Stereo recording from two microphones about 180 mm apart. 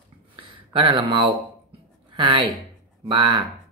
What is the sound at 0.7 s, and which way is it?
Speech, 30° right (ahead or behind).